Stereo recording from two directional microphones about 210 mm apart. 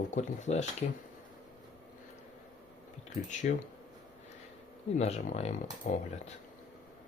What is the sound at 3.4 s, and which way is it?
Speech, 40° left (ahead or behind).